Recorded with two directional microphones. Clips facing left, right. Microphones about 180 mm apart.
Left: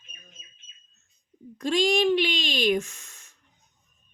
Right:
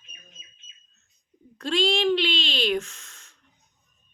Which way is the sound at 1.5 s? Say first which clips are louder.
Left 2 dB; 15° left (ahead or behind).